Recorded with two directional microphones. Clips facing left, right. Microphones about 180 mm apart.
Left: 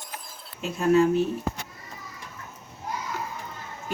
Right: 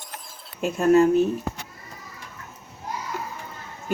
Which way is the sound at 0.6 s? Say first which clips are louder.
Right 3 dB; 45° right (ahead or behind).